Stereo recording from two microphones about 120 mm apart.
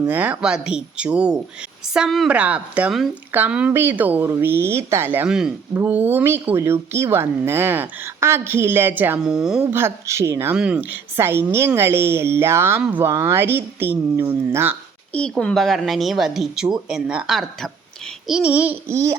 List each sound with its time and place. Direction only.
0.0 s a woman's voice: 15° right (ahead or behind)
5.3 s speech: 5° right (ahead or behind)
5.7 s speech: 15° right (ahead or behind)
9.7 s speech: 20° right (ahead or behind)
15.1 s speech: 10° left (ahead or behind); by 19.1 s 25° right (ahead or behind)